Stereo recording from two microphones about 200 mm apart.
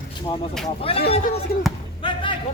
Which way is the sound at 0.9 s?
30° left (ahead or behind).